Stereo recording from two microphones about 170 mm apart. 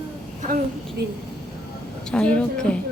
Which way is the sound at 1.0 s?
80° right.